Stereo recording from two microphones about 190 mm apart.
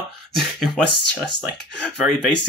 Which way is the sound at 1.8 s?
5° left (ahead or behind).